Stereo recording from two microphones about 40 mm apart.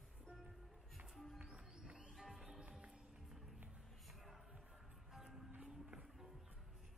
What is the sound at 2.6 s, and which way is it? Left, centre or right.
Music, right.